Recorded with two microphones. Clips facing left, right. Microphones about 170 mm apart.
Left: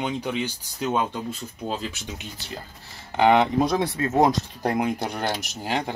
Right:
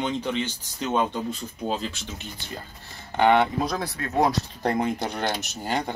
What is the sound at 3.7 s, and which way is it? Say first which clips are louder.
Speech: left 6 dB; 25° left (ahead or behind).